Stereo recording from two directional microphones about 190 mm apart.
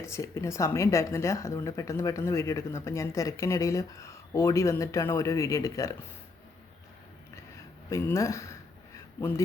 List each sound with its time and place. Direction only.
0.0 s speech: 15° left (ahead or behind)
7.9 s speech: 15° left (ahead or behind)